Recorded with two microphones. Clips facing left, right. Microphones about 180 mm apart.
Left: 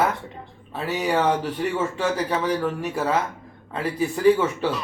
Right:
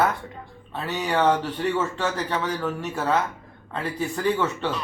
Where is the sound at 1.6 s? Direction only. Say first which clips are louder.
Left 1 dB; 10° left (ahead or behind).